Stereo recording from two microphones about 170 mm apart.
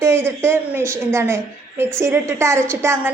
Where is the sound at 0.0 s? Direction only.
15° right (ahead or behind).